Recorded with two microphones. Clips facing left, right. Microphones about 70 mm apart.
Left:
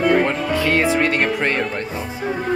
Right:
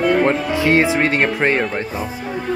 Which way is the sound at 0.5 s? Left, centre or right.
Centre.